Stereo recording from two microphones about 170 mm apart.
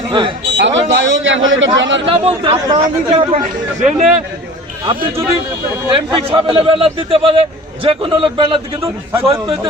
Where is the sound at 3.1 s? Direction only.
45° right (ahead or behind).